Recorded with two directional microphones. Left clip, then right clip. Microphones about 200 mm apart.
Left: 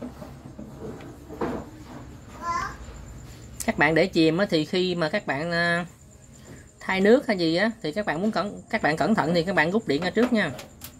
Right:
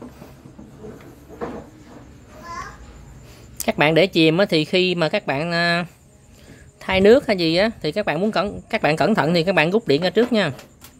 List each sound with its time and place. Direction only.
3.5 s speech: 45° right (ahead or behind)